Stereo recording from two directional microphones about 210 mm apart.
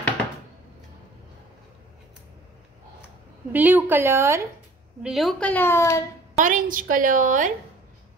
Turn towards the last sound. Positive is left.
turn(degrees=-40)  # may be behind; listen again after turning